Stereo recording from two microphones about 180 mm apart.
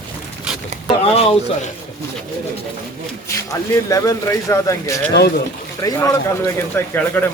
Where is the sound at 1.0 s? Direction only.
35° left (ahead or behind).